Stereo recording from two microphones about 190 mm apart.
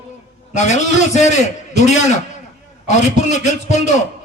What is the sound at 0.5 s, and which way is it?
A man's voice, 40° left (ahead or behind).